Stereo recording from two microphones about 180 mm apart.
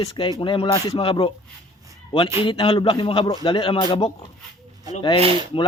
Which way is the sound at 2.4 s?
30° left (ahead or behind).